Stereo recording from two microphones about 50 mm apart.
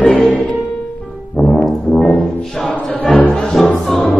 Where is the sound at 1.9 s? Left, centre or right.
Centre.